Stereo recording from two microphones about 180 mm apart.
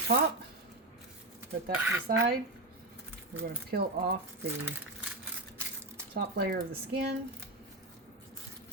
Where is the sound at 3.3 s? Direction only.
60° right (ahead or behind).